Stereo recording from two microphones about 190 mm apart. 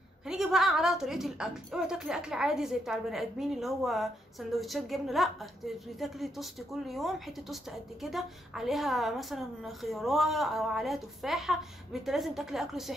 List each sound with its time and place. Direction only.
0.3 s a woman's voice: centre (ahead or behind)